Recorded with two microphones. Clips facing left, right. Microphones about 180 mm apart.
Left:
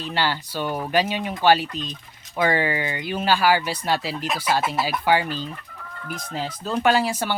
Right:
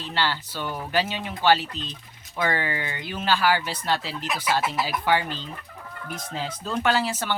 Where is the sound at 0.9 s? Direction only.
15° left (ahead or behind).